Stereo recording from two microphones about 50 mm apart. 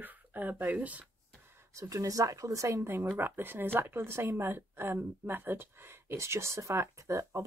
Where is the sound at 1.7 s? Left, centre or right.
Right.